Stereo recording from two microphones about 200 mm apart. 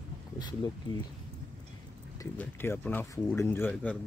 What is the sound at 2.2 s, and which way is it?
Speech, 10° left (ahead or behind).